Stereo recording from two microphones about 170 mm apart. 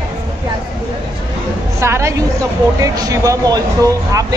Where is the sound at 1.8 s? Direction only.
15° right (ahead or behind).